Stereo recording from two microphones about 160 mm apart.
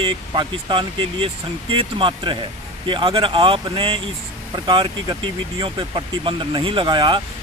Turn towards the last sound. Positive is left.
turn(degrees=-30)  # may be behind; listen again after turning